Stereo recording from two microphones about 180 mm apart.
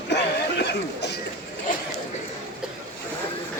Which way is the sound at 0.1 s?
70° left (ahead or behind).